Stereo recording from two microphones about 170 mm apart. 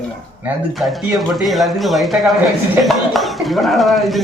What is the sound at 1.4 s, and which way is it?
Speech, centre (ahead or behind).